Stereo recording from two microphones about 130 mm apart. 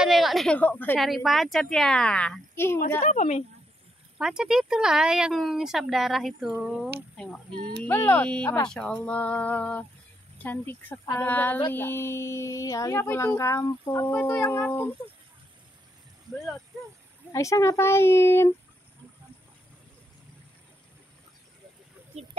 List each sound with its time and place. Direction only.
0.0 s a woman's voice: centre (ahead or behind)
0.6 s speech: 15° left (ahead or behind)
0.9 s speech: centre (ahead or behind); by 2.8 s 20° left (ahead or behind)
3.0 s a woman's voice: 65° left (ahead or behind)
4.2 s speech: 5° right (ahead or behind)
7.8 s speech: 15° left (ahead or behind)
17.3 s speech: 25° left (ahead or behind)